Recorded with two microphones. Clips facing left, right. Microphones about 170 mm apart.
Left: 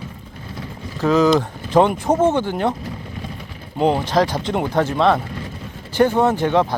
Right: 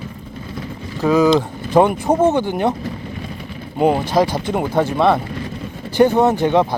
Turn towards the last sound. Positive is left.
turn(degrees=-15)  # may be behind; listen again after turning